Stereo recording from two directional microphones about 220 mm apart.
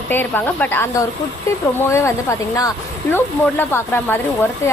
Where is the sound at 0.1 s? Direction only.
10° left (ahead or behind).